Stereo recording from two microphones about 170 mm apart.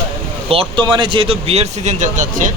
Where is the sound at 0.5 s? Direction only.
30° right (ahead or behind); by 2.5 s 45° right (ahead or behind).